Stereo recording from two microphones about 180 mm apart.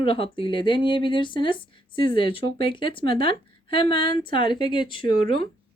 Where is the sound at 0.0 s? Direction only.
30° left (ahead or behind).